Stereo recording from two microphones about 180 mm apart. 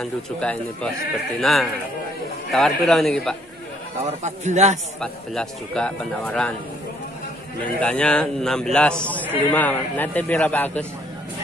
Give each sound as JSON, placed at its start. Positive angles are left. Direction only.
{"t": 0.0, "sound": "speech", "side_deg": 5}
{"t": 4.0, "sound": "a man's voice", "side_deg": -40}
{"t": 5.0, "sound": "speech", "side_deg": 5}
{"t": 7.6, "sound": "a man's voice", "side_deg": 5}